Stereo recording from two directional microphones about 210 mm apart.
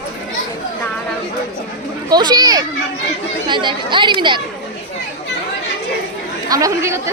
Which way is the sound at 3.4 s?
20° right (ahead or behind).